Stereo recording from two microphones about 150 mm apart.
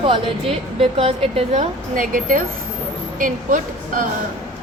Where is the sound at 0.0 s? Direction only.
35° right (ahead or behind).